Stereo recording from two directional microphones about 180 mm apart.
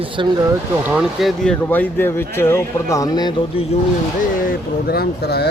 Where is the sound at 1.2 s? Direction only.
5° left (ahead or behind); by 3.3 s 20° left (ahead or behind).